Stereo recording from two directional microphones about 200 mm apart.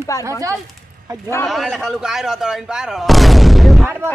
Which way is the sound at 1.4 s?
Centre (ahead or behind).